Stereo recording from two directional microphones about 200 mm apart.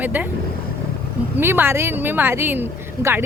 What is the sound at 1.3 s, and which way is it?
Speech, 10° right (ahead or behind).